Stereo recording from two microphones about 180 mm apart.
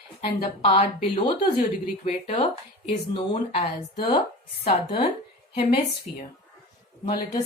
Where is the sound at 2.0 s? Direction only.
35° left (ahead or behind).